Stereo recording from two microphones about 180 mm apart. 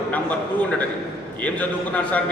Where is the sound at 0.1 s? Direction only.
10° left (ahead or behind).